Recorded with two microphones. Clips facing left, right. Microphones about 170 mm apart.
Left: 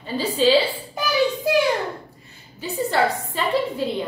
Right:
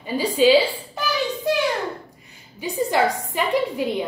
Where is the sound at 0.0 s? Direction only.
15° right (ahead or behind).